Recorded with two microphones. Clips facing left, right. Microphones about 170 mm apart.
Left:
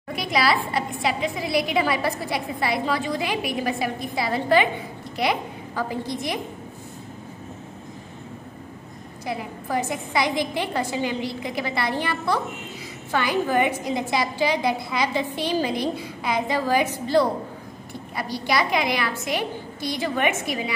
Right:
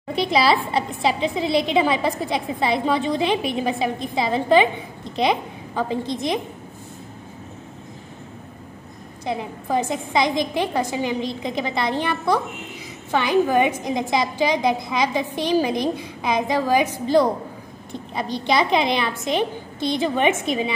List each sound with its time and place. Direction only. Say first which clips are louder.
0.1 s a woman's voice: right 4 dB; 25° right (ahead or behind)
9.2 s a woman's voice: right 3 dB; 25° right (ahead or behind)